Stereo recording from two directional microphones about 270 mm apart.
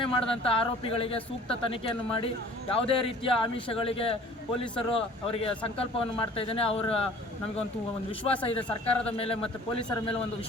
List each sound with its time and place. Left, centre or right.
0.0 s speech: centre
8.9 s speech: left